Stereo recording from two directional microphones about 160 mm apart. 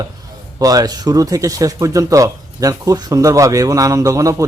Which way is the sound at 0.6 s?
25° right (ahead or behind).